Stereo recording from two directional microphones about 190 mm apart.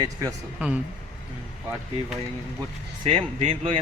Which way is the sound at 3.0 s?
30° right (ahead or behind).